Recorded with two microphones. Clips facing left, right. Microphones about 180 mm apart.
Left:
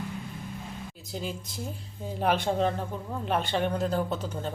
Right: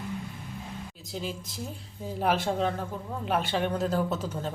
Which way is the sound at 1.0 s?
Centre (ahead or behind).